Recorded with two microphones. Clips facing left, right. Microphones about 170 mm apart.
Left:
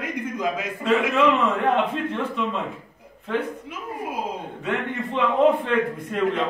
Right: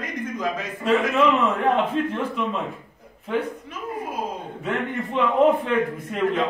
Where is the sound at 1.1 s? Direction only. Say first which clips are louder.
Even; centre (ahead or behind).